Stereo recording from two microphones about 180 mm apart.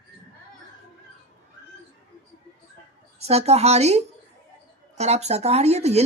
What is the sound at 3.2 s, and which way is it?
A woman's voice, 35° right (ahead or behind).